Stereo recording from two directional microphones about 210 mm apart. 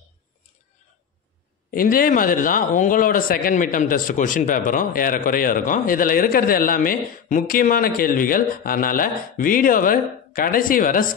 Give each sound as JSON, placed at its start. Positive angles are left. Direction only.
{"t": 1.7, "sound": "a man's voice", "side_deg": 40}